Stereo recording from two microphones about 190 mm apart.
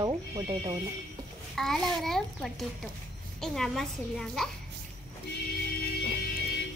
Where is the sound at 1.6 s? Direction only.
Centre (ahead or behind).